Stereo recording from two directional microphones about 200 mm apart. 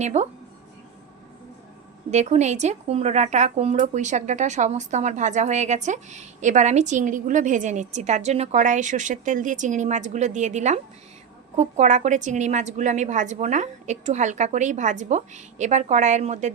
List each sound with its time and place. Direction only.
0.0 s speech: 35° right (ahead or behind)
2.0 s speech: 35° right (ahead or behind)